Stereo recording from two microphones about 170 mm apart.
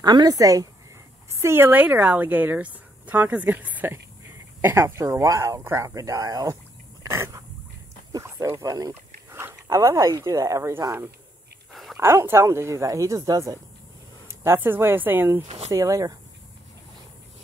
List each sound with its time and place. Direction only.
0.0 s a woman's voice: 25° right (ahead or behind)
11.7 s a sound: centre (ahead or behind)
12.0 s a woman's voice: 15° right (ahead or behind)
15.4 s speech: 40° right (ahead or behind)
15.7 s speech: 20° right (ahead or behind)